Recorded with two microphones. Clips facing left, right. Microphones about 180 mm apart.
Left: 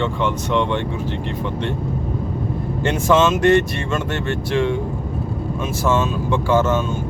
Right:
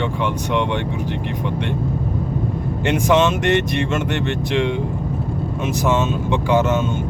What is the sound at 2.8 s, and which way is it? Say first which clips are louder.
Speech: even; 20° right (ahead or behind).